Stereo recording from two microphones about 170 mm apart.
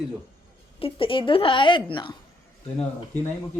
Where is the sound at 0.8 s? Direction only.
30° left (ahead or behind).